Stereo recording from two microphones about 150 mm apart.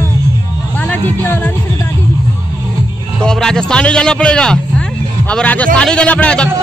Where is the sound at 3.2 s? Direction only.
5° left (ahead or behind).